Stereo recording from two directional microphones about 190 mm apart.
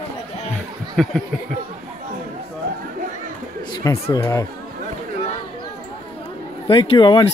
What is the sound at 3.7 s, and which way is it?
Speech, 20° left (ahead or behind).